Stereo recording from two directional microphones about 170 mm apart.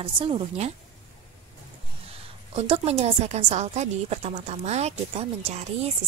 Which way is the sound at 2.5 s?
35° right (ahead or behind).